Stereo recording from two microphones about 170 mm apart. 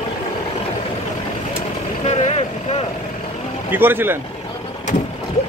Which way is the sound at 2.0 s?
40° left (ahead or behind).